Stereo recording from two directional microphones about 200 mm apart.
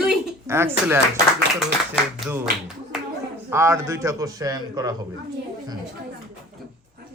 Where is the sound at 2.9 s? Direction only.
5° right (ahead or behind).